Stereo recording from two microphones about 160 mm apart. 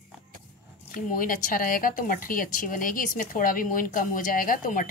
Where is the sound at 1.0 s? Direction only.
60° left (ahead or behind).